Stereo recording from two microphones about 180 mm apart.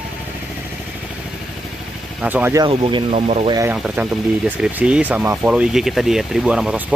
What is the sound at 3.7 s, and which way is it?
Speech, 5° right (ahead or behind).